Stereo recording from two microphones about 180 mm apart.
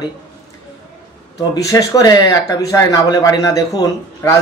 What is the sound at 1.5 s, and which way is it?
Speech, 20° left (ahead or behind).